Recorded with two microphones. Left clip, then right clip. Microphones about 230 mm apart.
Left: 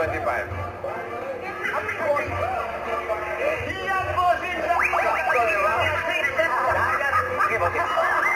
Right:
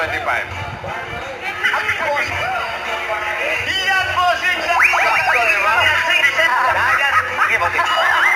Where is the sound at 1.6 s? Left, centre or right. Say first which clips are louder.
Right 8 dB; centre.